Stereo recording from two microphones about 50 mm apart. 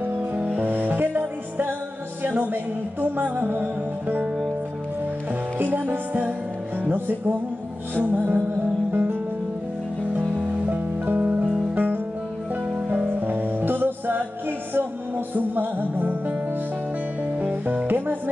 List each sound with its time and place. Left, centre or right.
0.0 s music: right
5.3 s music: right
10.3 s music: right
11.7 s music: right
12.6 s music: right
17.4 s music: right